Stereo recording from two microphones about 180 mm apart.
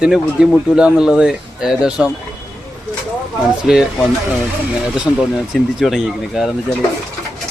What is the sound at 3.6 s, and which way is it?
Speech, 5° right (ahead or behind).